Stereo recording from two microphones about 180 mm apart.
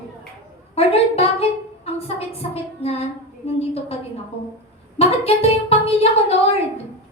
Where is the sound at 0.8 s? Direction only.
35° left (ahead or behind).